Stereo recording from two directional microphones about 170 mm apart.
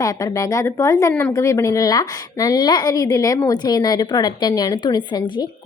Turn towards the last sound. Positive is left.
turn(degrees=25)  # may be behind; listen again after turning